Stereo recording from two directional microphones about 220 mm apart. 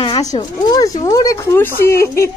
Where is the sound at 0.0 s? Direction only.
20° left (ahead or behind).